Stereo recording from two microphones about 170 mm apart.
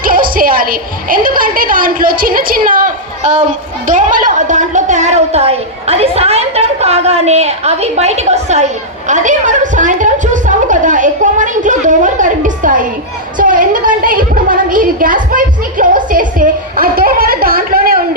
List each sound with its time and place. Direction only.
0.0 s a woman's voice: 55° right (ahead or behind)